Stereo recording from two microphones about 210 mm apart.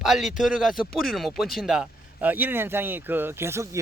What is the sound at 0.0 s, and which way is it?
Speech, centre (ahead or behind).